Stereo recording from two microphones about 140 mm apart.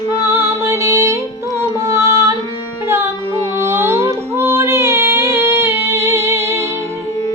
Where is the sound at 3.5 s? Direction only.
20° right (ahead or behind).